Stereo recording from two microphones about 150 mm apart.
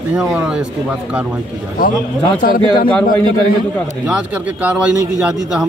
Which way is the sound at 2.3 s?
70° left (ahead or behind).